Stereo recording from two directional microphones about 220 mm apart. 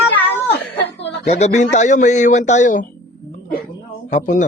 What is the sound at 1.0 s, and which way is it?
Speech, 30° left (ahead or behind).